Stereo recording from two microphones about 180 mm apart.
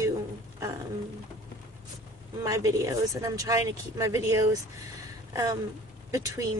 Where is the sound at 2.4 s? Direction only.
20° right (ahead or behind).